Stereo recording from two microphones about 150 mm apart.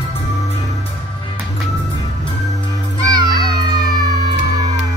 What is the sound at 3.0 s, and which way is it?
Music, 25° right (ahead or behind).